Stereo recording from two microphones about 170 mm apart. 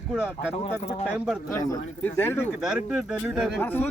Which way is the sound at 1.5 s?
20° left (ahead or behind).